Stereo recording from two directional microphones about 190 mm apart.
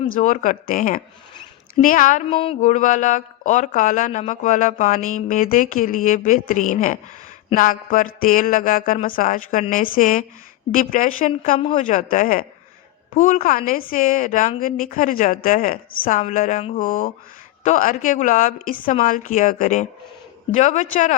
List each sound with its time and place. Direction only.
0.1 s a woman's voice: 40° left (ahead or behind)
2.3 s a woman's voice: 30° left (ahead or behind); by 11.3 s 45° left (ahead or behind)
11.3 s a woman's voice: 30° left (ahead or behind)